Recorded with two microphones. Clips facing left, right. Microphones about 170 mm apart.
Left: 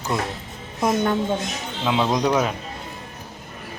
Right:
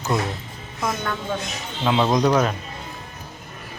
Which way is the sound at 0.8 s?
20° left (ahead or behind).